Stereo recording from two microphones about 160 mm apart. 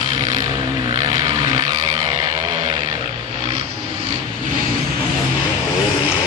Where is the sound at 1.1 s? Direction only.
25° right (ahead or behind).